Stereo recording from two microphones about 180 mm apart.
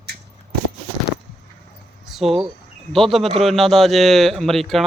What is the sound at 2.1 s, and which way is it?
Speech, centre (ahead or behind).